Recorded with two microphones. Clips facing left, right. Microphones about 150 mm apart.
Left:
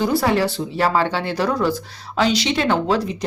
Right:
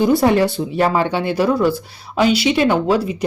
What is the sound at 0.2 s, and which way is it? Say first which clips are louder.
Speech: right 4 dB; 15° right (ahead or behind).